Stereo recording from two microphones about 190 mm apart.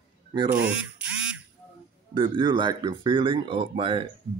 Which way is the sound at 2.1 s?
25° right (ahead or behind).